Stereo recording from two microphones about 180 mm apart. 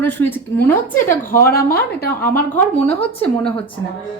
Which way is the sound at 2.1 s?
10° left (ahead or behind).